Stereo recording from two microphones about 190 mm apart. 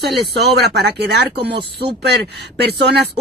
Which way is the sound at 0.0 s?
60° right (ahead or behind).